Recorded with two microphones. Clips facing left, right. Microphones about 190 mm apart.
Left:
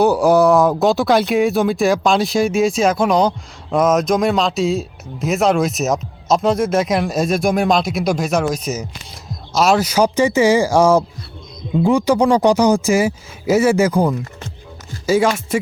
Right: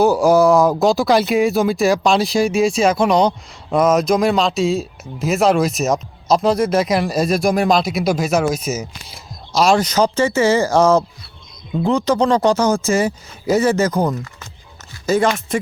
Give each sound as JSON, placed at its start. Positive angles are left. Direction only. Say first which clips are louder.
{"t": 0.0, "sound": "speech", "louder": "even", "side_deg": 0}